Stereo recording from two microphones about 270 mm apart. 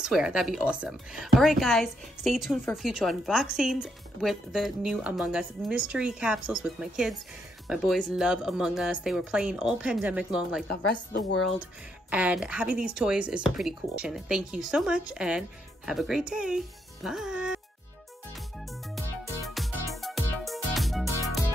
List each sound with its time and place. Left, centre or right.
0.0 s speech: centre
12.1 s speech: centre
18.9 s music: centre